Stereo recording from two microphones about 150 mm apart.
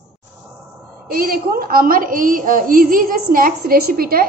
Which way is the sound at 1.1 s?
80° right.